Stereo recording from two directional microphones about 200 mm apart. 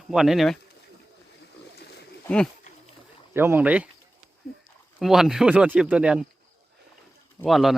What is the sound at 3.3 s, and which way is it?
Speech, 10° right (ahead or behind).